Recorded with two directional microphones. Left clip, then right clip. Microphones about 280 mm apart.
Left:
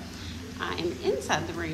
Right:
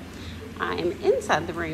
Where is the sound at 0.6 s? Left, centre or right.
Centre.